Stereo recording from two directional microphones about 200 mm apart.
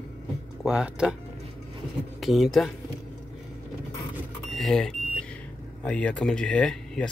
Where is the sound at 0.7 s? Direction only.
5° right (ahead or behind).